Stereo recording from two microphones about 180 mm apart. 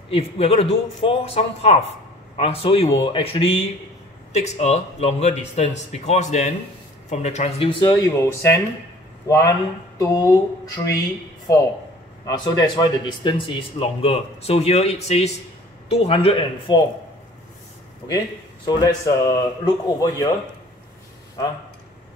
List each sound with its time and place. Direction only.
0.1 s speech: 35° left (ahead or behind)
12.3 s speech: 20° left (ahead or behind)
18.7 s speech: 20° left (ahead or behind)